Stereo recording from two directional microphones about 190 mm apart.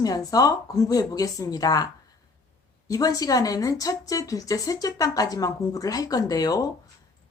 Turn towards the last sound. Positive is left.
turn(degrees=20)  # may be behind; listen again after turning